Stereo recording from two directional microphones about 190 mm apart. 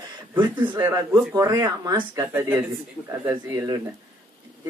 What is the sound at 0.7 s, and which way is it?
Speech, 15° right (ahead or behind).